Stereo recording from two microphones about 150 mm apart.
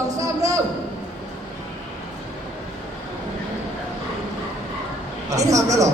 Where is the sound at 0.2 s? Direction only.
20° right (ahead or behind).